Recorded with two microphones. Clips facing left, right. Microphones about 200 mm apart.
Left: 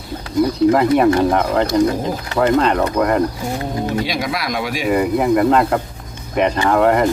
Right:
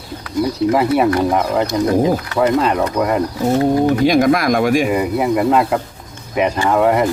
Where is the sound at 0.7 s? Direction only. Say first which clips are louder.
Right 1 dB; 5° right (ahead or behind).